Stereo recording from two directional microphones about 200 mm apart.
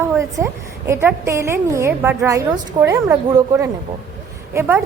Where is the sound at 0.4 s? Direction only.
15° right (ahead or behind).